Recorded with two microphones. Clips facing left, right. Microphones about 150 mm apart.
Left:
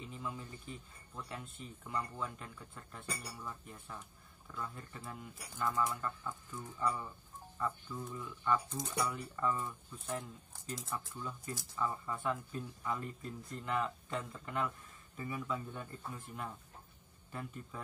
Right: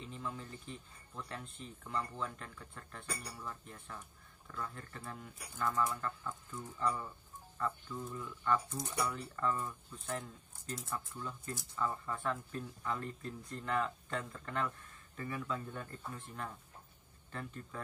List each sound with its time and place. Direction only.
0.0 s speech: 10° left (ahead or behind)
8.6 s speech: 25° left (ahead or behind)
9.1 s speech: 10° left (ahead or behind)